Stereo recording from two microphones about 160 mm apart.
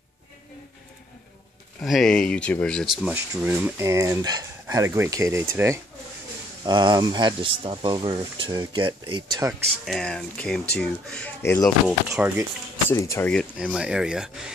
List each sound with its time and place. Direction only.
1.8 s speech: centre (ahead or behind)
3.4 s speech: 15° right (ahead or behind)
6.6 s speech: 25° right (ahead or behind)
9.5 s speech: centre (ahead or behind)
12.1 s speech: 20° right (ahead or behind)
12.9 s speech: 20° left (ahead or behind)
13.3 s speech: centre (ahead or behind)